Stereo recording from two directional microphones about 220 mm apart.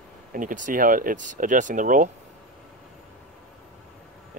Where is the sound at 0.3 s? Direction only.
35° right (ahead or behind).